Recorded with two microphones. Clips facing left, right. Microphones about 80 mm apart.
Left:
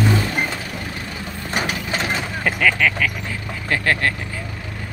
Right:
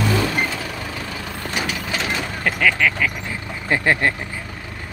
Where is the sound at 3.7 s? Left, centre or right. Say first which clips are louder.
Right 2 dB; centre.